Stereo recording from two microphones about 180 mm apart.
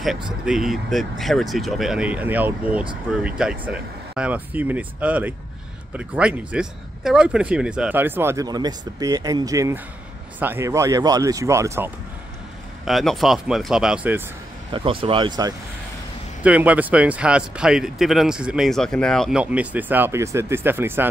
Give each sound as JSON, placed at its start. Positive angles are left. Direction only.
{"t": 0.5, "sound": "speech", "side_deg": 0}
{"t": 12.8, "sound": "speech", "side_deg": 0}
{"t": 14.7, "sound": "speech", "side_deg": -30}
{"t": 16.4, "sound": "speech", "side_deg": -5}